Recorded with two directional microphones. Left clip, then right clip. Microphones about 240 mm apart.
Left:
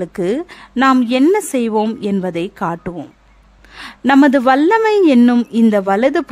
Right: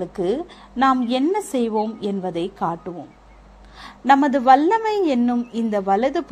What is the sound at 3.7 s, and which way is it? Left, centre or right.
Speech, left.